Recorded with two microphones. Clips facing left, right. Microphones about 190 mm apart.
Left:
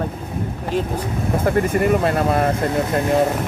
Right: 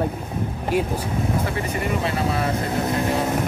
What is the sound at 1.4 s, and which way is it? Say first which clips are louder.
Speech: left 8 dB; 50° left (ahead or behind).